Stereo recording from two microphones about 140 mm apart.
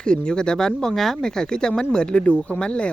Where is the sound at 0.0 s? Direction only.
5° left (ahead or behind).